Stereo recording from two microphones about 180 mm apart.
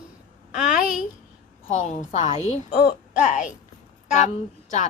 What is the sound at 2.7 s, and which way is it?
Speech, 60° left (ahead or behind).